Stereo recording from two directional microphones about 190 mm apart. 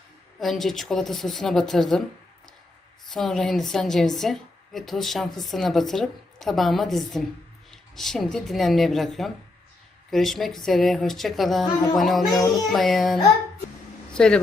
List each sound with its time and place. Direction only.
0.3 s a woman's voice: centre (ahead or behind)
3.1 s a woman's voice: centre (ahead or behind)
12.2 s speech: 20° left (ahead or behind)
12.7 s a woman's voice: centre (ahead or behind)